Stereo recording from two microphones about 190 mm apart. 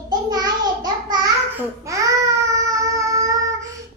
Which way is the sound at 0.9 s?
20° right (ahead or behind).